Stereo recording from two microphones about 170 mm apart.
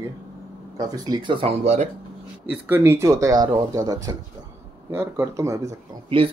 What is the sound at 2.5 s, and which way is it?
Speech, 10° right (ahead or behind).